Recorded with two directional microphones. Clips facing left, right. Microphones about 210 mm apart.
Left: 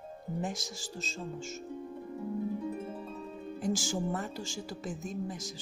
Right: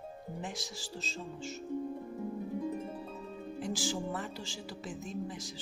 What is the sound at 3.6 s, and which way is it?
Speech, 45° left (ahead or behind).